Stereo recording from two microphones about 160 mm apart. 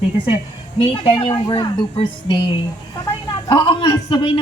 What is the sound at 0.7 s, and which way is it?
A man's voice, 35° left (ahead or behind).